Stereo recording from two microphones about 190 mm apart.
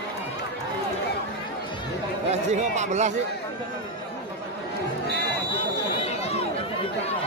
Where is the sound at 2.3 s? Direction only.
35° right (ahead or behind).